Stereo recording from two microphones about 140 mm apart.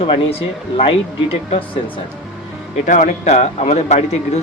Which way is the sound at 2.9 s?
60° left (ahead or behind).